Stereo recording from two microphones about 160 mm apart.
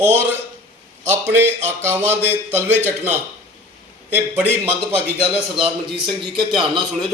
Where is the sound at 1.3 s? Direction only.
15° right (ahead or behind).